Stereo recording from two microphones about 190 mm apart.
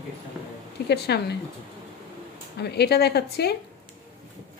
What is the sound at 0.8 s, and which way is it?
Speech, 60° left (ahead or behind).